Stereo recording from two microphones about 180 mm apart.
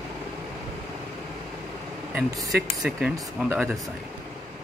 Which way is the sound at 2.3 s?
Centre (ahead or behind).